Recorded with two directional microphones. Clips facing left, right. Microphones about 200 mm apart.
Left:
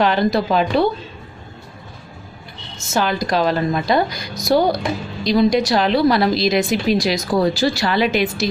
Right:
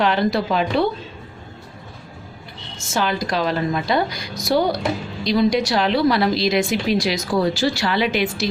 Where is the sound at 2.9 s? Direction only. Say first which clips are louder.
Left 3 dB; 40° left (ahead or behind).